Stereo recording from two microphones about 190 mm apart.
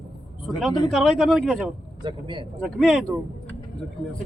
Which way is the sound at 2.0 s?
25° right (ahead or behind).